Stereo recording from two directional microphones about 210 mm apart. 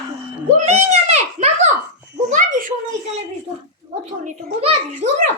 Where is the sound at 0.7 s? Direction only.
30° right (ahead or behind).